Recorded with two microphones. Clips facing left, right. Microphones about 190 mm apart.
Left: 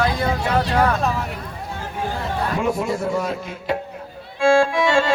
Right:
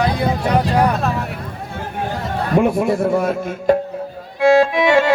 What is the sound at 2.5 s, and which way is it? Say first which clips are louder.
Speech: right 9 dB; 60° right (ahead or behind).